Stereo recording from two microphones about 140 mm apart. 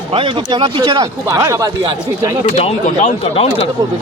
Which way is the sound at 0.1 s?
40° right (ahead or behind).